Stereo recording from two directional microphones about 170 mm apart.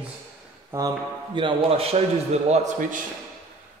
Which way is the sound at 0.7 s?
20° right (ahead or behind).